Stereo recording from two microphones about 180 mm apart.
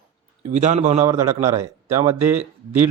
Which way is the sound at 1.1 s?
15° right (ahead or behind).